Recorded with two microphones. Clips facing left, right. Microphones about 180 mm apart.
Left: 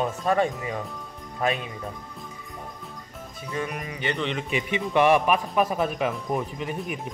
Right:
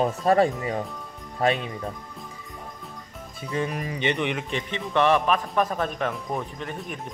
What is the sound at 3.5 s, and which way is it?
Speech, 35° right (ahead or behind).